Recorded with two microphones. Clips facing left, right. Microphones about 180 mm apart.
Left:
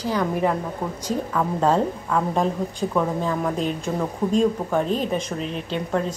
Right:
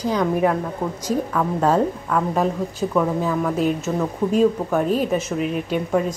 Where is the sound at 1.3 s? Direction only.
Centre (ahead or behind).